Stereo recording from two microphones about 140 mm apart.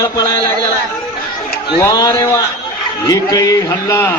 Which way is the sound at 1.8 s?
25° left (ahead or behind).